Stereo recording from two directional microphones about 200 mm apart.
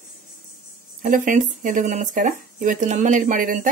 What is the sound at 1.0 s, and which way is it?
Speech, 40° right (ahead or behind).